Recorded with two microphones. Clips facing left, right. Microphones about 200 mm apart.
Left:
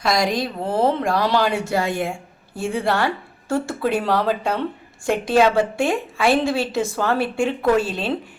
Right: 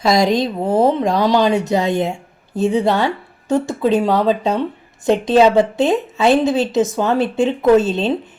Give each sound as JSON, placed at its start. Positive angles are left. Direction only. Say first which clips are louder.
{"t": 0.1, "sound": "a woman's voice", "louder": "right 6 dB", "side_deg": -25}